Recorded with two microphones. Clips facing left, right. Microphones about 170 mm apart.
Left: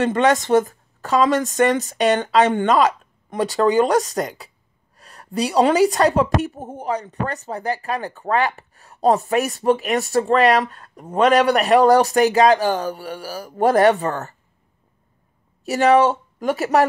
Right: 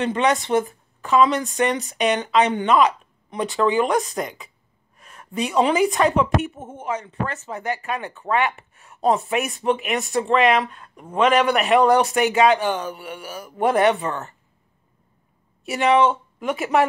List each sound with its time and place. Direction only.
0.0 s a woman's voice: 40° left (ahead or behind)
15.6 s speech: 40° left (ahead or behind)